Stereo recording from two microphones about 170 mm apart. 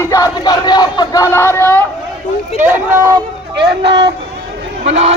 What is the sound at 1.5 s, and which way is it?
Speech, 15° left (ahead or behind).